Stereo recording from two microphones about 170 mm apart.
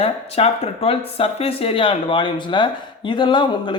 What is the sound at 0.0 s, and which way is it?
Speech, 35° left (ahead or behind).